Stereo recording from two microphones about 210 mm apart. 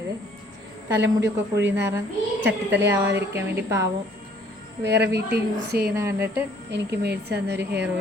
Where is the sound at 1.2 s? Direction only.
55° right (ahead or behind).